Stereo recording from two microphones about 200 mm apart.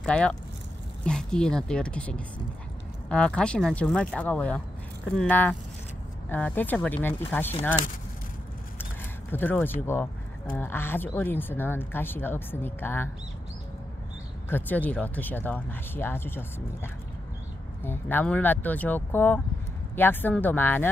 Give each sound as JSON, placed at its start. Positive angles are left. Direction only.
{"t": 0.0, "sound": "speech", "side_deg": 5}
{"t": 9.3, "sound": "speech", "side_deg": 10}
{"t": 14.5, "sound": "speech", "side_deg": 10}